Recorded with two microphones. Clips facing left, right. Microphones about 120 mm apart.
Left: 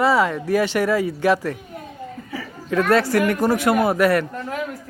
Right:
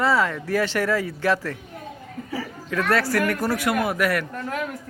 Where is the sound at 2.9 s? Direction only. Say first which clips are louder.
Left 4 dB; 20° left (ahead or behind).